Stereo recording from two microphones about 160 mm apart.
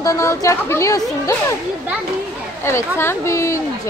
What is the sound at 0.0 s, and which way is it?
Speech, 20° left (ahead or behind).